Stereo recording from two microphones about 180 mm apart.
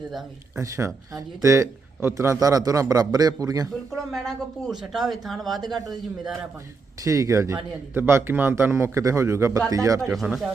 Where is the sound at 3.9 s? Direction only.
Centre (ahead or behind).